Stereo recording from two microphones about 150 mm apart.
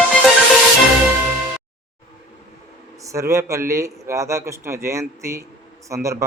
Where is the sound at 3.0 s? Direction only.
20° right (ahead or behind).